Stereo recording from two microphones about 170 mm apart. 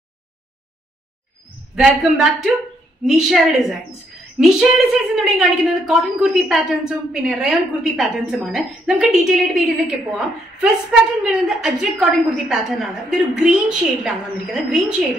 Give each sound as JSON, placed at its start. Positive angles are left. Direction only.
{"t": 1.8, "sound": "a woman's voice", "side_deg": 0}